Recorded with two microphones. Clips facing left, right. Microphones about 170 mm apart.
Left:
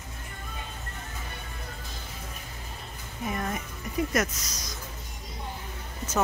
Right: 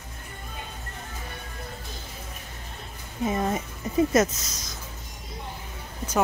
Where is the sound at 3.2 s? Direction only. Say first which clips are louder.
Right 6 dB; 25° right (ahead or behind).